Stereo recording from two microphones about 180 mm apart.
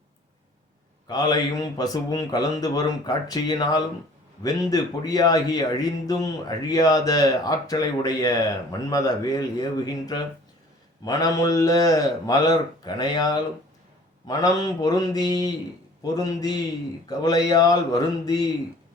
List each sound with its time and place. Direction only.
1.0 s speech: 20° left (ahead or behind)